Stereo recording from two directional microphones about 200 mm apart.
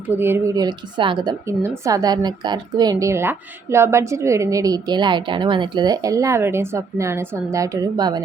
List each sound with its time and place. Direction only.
0.1 s a woman's voice: 10° right (ahead or behind)